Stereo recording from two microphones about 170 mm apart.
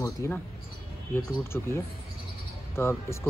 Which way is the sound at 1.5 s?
10° left (ahead or behind).